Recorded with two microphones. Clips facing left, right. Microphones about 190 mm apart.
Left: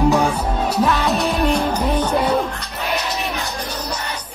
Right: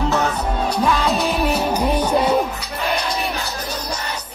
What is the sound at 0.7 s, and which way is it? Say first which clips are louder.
Music: left 1 dB; centre (ahead or behind).